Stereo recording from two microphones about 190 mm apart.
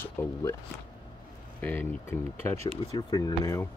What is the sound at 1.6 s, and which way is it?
Speech, 10° left (ahead or behind).